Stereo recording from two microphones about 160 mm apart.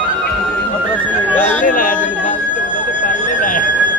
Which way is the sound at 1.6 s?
55° left (ahead or behind).